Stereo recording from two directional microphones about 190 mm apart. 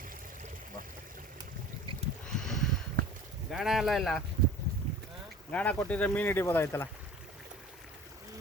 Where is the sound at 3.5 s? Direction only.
Centre (ahead or behind).